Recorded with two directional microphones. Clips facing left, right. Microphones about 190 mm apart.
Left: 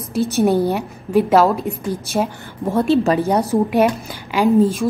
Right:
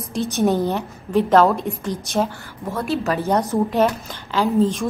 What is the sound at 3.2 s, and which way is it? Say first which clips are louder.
A woman's voice: left 3 dB; 10° left (ahead or behind).